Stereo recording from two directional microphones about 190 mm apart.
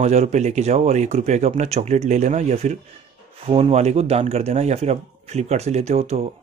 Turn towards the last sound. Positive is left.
turn(degrees=-35)  # may be behind; listen again after turning